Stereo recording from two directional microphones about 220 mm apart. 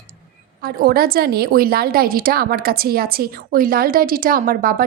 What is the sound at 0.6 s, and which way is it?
A woman's voice, 45° right (ahead or behind).